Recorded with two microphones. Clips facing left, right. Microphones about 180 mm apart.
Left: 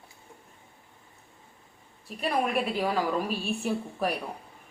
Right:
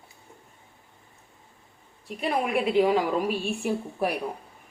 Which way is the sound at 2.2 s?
15° right (ahead or behind).